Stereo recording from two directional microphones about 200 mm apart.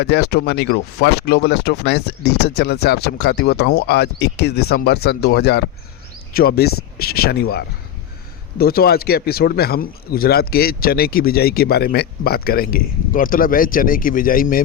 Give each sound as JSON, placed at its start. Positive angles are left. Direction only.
{"t": 0.0, "sound": "speech", "side_deg": 55}